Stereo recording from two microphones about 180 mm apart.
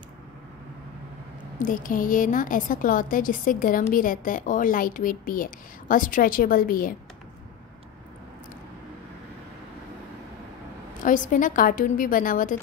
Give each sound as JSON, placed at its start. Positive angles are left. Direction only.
{"t": 1.6, "sound": "a woman's voice", "side_deg": 50}
{"t": 11.0, "sound": "a woman's voice", "side_deg": 45}